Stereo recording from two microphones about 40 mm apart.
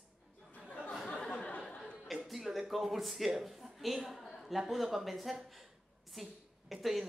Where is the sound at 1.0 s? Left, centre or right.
Left.